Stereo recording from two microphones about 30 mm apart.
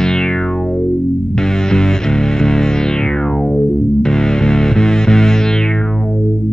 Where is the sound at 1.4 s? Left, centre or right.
Left.